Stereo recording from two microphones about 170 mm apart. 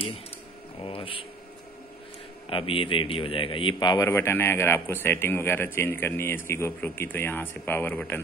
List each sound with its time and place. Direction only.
0.8 s speech: 30° left (ahead or behind)
2.5 s a man's voice: 30° left (ahead or behind); by 8.2 s 10° left (ahead or behind)